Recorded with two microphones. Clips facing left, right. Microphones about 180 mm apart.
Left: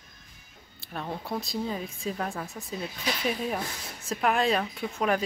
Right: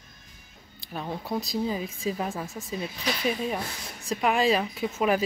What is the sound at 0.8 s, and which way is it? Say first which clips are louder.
Speech: right 1 dB; centre (ahead or behind).